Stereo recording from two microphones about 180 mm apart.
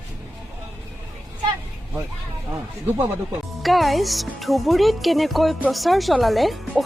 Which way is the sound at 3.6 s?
Centre (ahead or behind).